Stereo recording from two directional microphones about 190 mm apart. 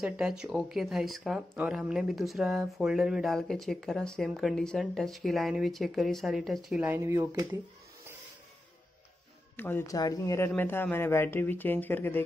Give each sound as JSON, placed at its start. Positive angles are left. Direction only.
{"t": 0.0, "sound": "speech", "side_deg": -5}
{"t": 9.6, "sound": "speech", "side_deg": 10}